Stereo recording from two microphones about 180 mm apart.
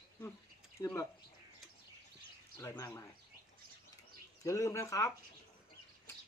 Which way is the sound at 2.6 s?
15° left (ahead or behind).